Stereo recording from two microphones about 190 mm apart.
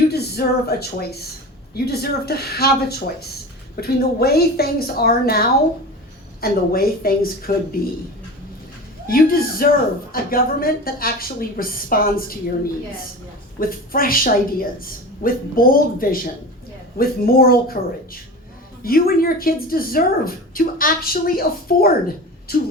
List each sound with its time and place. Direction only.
0.1 s a woman's voice: 55° left (ahead or behind)
9.0 s speech: 50° left (ahead or behind)
13.6 s speech: 50° left (ahead or behind)